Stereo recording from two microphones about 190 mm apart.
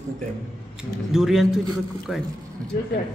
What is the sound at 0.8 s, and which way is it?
Speech, centre (ahead or behind).